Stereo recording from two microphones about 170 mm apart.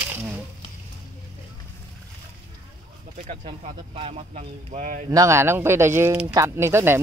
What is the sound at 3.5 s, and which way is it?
Speech, 35° right (ahead or behind).